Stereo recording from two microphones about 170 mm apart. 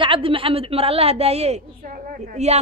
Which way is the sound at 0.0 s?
30° right (ahead or behind).